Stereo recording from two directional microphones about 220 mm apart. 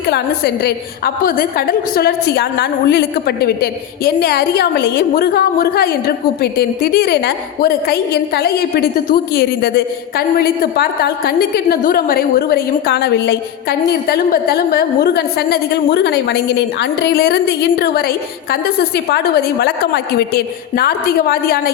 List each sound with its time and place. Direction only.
0.1 s a woman's voice: 45° left (ahead or behind)